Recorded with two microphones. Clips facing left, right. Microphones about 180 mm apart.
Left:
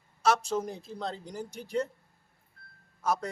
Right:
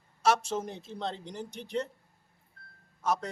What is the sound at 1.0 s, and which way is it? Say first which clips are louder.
Speech: right 1 dB; centre (ahead or behind).